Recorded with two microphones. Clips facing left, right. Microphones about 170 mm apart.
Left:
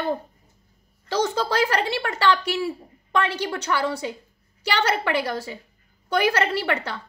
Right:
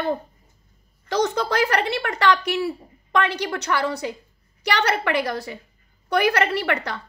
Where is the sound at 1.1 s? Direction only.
30° left (ahead or behind).